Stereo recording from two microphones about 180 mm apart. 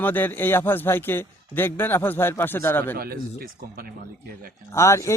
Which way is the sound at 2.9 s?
55° right (ahead or behind).